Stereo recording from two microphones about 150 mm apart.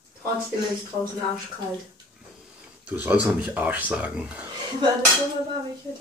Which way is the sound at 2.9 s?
10° right (ahead or behind).